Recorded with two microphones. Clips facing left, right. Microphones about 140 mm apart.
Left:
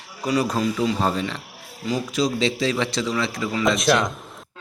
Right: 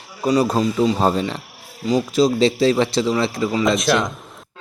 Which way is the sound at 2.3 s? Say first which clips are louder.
Right 6 dB; 35° right (ahead or behind).